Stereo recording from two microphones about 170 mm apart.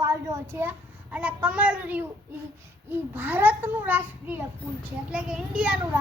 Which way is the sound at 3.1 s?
10° right (ahead or behind).